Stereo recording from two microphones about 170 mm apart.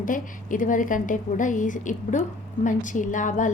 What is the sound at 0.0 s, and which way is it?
A woman's voice, 50° left (ahead or behind).